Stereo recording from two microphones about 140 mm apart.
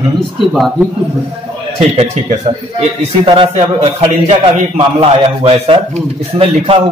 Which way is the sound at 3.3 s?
35° right (ahead or behind).